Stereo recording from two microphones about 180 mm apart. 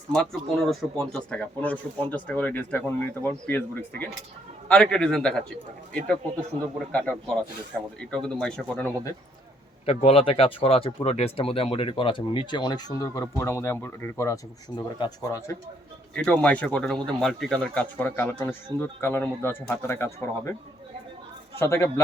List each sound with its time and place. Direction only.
0.7 s a man's voice: 5° left (ahead or behind)
9.8 s speech: 35° left (ahead or behind); by 20.6 s 15° left (ahead or behind)
21.6 s speech: 15° left (ahead or behind)